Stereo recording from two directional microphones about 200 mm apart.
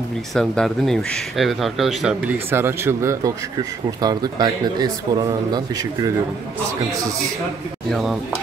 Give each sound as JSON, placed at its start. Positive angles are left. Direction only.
{"t": 0.3, "sound": "speech", "side_deg": 0}
{"t": 7.9, "sound": "speech", "side_deg": 0}